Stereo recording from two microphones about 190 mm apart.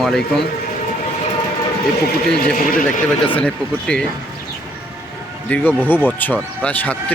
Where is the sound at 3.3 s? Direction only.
5° left (ahead or behind).